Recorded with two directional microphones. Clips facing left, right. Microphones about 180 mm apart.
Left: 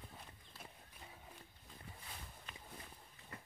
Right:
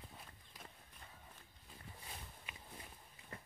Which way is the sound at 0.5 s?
15° right (ahead or behind).